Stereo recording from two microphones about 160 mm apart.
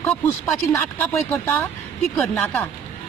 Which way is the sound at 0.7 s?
15° left (ahead or behind).